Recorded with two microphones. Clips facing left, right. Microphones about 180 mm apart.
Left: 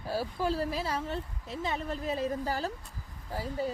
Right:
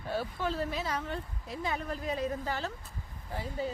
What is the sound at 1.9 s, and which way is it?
Speech, 30° left (ahead or behind).